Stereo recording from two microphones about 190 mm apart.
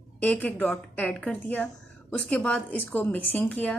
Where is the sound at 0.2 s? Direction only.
10° left (ahead or behind).